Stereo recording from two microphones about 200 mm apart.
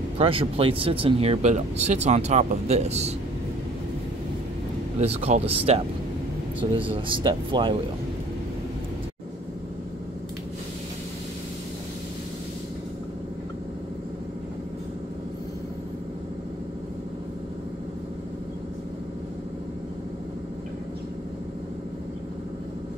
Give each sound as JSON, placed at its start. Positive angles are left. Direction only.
{"t": 0.2, "sound": "speech", "side_deg": -25}
{"t": 5.0, "sound": "speech", "side_deg": -30}
{"t": 6.7, "sound": "speech", "side_deg": -25}